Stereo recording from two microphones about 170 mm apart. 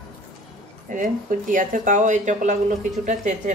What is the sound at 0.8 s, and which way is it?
Speech, 50° right (ahead or behind).